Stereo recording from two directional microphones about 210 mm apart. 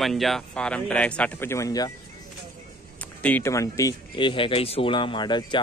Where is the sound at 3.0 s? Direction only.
10° left (ahead or behind).